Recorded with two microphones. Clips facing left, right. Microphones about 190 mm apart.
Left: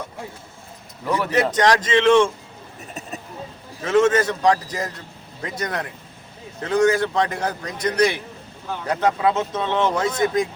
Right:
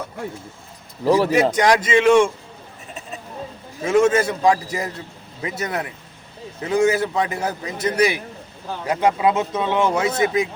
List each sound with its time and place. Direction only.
1.0 s a man's voice: 30° right (ahead or behind)
1.3 s a man's voice: 10° right (ahead or behind)
3.8 s a man's voice: 10° right (ahead or behind)